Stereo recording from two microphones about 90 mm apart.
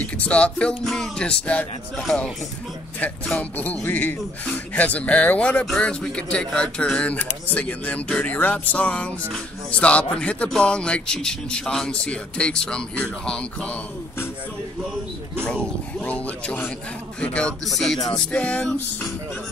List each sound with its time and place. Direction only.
0.0 s speech: 15° left (ahead or behind)
16.0 s speech: 15° left (ahead or behind)